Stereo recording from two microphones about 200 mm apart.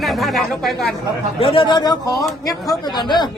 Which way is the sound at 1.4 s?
25° left (ahead or behind).